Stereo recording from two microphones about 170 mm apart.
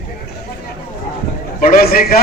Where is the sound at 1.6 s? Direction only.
60° left (ahead or behind).